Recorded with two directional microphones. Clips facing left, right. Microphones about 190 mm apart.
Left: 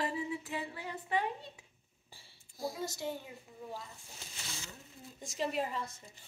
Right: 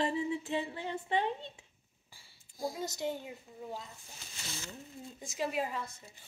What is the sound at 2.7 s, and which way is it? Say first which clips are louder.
Female singing: right 2 dB; 20° right (ahead or behind).